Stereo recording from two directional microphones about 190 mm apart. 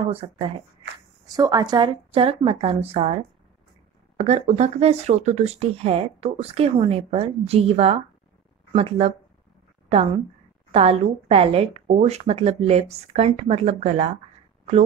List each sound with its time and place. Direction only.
0.0 s speech: 30° right (ahead or behind)
1.2 s a woman's voice: 20° right (ahead or behind)
4.2 s a woman's voice: 35° right (ahead or behind)